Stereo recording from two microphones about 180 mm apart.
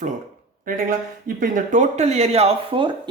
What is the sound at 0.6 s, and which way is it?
Speech, 50° right (ahead or behind).